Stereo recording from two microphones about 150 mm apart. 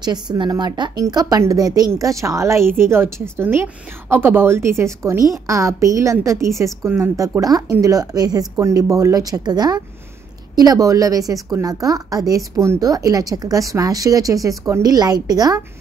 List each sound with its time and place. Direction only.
0.0 s a woman's voice: 30° right (ahead or behind)